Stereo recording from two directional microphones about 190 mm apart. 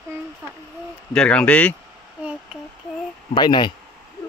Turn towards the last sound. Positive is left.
turn(degrees=25)  # may be behind; listen again after turning